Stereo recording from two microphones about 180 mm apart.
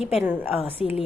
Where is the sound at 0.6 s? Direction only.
30° left (ahead or behind).